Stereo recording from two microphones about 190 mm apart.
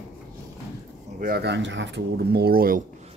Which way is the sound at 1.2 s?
55° right (ahead or behind).